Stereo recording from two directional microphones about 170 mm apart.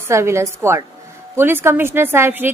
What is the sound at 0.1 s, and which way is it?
A woman's voice, 15° right (ahead or behind).